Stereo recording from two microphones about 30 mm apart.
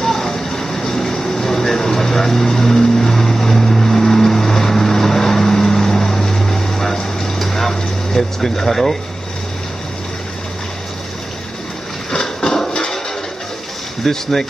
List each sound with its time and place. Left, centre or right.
0.0 s vehicle: centre
12.1 s a sound: centre
14.0 s speech: centre